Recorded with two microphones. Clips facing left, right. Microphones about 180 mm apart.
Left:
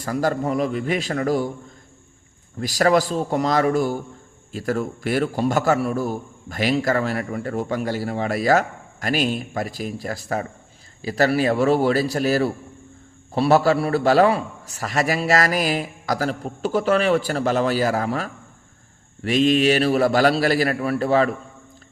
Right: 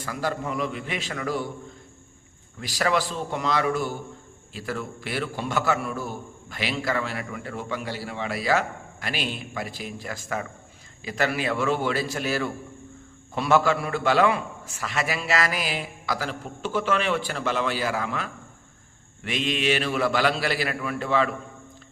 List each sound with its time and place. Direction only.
0.0 s a man's voice: 40° left (ahead or behind)
2.6 s a man's voice: 40° left (ahead or behind)